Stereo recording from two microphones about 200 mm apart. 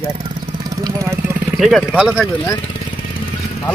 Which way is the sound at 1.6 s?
Centre (ahead or behind).